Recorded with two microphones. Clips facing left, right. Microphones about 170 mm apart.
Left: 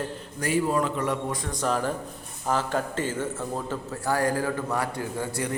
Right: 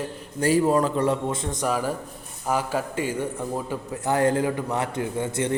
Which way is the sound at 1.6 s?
10° right (ahead or behind).